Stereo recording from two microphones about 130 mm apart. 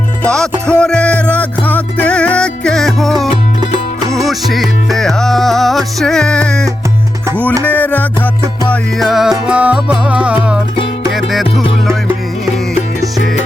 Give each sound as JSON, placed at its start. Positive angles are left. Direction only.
{"t": 0.2, "sound": "music", "side_deg": 5}
{"t": 3.6, "sound": "music", "side_deg": -25}
{"t": 4.3, "sound": "music", "side_deg": 0}
{"t": 8.7, "sound": "music", "side_deg": 0}